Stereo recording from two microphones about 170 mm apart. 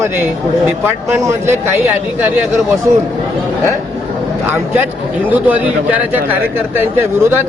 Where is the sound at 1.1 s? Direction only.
15° right (ahead or behind).